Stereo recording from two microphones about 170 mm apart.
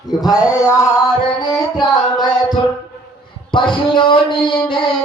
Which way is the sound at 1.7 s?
25° left (ahead or behind).